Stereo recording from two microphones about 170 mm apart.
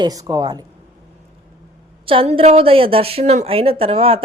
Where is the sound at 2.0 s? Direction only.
30° right (ahead or behind).